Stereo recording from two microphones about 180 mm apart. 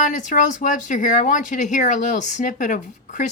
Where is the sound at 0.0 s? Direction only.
45° left (ahead or behind).